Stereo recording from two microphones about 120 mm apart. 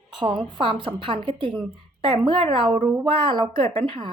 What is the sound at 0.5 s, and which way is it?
Speech, 45° right (ahead or behind).